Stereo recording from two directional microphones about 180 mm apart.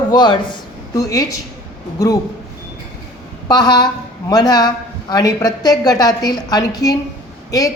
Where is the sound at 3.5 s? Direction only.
20° left (ahead or behind).